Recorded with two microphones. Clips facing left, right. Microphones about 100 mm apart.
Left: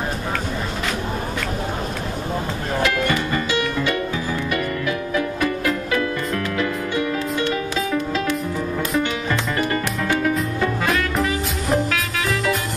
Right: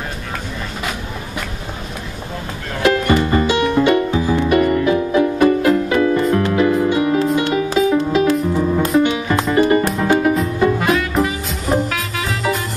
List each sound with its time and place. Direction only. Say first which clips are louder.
2.8 s music: right 7 dB; 30° right (ahead or behind)
9.8 s music: right 6 dB; 35° right (ahead or behind)
10.8 s music: right 4 dB; 5° right (ahead or behind)